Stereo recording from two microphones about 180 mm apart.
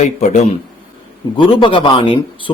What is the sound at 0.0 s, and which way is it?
Speech, 40° left (ahead or behind).